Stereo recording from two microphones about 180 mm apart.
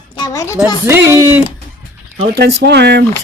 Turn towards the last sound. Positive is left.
turn(degrees=-70)  # may be behind; listen again after turning